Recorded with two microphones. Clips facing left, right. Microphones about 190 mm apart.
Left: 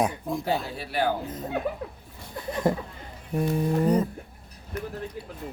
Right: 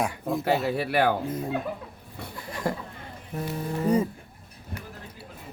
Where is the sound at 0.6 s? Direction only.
65° right (ahead or behind).